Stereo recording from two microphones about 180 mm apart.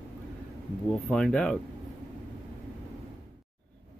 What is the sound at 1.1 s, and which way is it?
Speech, 5° left (ahead or behind).